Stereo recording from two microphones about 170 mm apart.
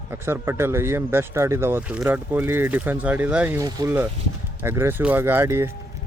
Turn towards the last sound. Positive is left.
turn(degrees=-15)  # may be behind; listen again after turning